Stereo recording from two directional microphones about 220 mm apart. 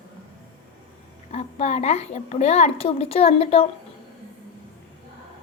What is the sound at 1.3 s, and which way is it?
A woman's voice, 30° left (ahead or behind).